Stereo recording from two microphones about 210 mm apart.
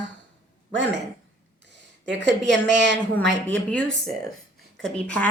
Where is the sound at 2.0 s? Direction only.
60° right (ahead or behind).